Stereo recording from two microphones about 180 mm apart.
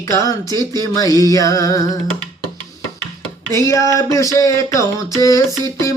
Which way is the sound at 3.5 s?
15° left (ahead or behind).